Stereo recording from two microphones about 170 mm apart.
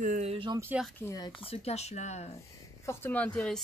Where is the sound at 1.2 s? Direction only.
35° left (ahead or behind).